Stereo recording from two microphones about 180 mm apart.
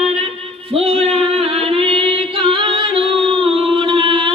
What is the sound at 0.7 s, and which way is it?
Singing, 35° right (ahead or behind).